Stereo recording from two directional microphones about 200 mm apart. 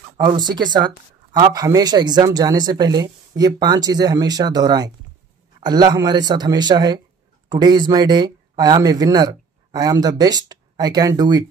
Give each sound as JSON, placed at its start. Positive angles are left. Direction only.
{"t": 0.2, "sound": "speech", "side_deg": -25}